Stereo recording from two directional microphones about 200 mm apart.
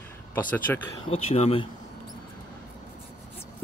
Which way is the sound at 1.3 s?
30° left (ahead or behind).